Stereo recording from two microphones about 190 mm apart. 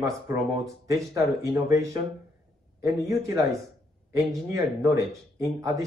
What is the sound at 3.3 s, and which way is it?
Speech, 15° right (ahead or behind).